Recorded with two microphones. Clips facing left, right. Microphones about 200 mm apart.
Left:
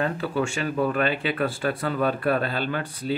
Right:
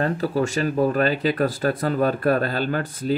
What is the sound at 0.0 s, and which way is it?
Speech, 40° right (ahead or behind).